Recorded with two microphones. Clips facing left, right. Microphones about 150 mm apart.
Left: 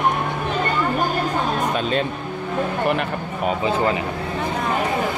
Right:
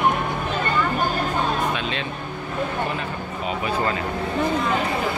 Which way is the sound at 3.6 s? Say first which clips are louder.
Left 3 dB; 20° left (ahead or behind).